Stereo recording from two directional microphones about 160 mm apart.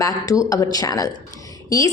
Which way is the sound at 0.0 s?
20° left (ahead or behind).